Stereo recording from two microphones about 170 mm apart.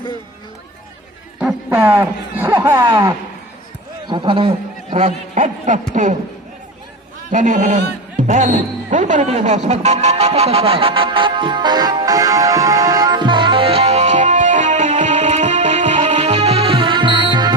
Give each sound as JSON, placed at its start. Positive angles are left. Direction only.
{"t": 1.4, "sound": "a sound", "side_deg": -10}
{"t": 4.0, "sound": "a man's voice", "side_deg": -30}
{"t": 7.3, "sound": "music", "side_deg": -45}